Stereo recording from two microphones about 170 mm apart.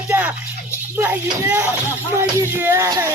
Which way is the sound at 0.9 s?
10° right (ahead or behind).